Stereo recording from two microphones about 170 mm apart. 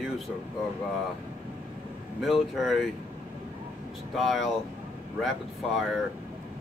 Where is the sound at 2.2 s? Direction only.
Centre (ahead or behind).